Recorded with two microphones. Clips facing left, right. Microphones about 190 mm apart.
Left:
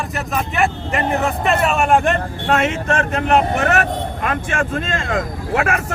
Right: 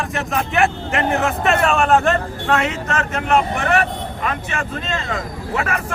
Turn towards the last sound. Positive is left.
turn(degrees=50)  # may be behind; listen again after turning